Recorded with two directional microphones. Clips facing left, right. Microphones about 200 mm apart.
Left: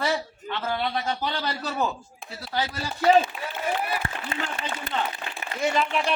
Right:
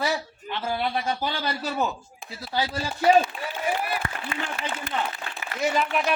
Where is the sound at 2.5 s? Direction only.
15° right (ahead or behind).